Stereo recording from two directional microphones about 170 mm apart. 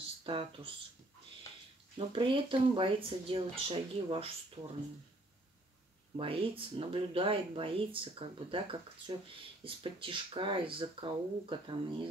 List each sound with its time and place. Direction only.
0.2 s speech: 30° right (ahead or behind)
2.0 s speech: 30° right (ahead or behind)
6.1 s speech: 30° right (ahead or behind)